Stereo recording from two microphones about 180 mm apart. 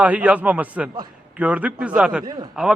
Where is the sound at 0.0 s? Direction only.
10° right (ahead or behind).